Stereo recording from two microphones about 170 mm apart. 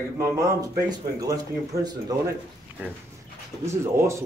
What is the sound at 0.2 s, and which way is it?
A man's voice, 20° right (ahead or behind).